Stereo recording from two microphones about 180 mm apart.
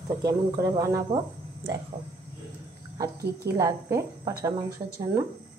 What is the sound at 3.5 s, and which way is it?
Speech, 15° right (ahead or behind).